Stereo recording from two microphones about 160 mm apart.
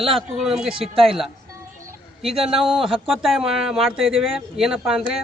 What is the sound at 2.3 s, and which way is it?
Speech, 35° right (ahead or behind).